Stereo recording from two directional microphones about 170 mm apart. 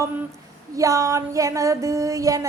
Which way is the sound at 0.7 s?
20° right (ahead or behind).